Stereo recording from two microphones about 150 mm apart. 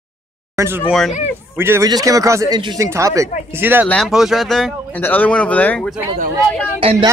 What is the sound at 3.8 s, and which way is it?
A man's voice, centre (ahead or behind).